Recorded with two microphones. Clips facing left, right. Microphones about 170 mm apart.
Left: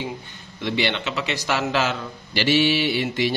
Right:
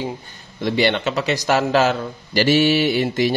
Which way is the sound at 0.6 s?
40° right (ahead or behind).